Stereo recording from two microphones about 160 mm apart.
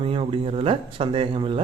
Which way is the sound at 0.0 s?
35° right (ahead or behind).